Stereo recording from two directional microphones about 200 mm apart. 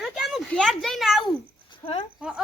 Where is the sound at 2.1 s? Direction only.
5° right (ahead or behind).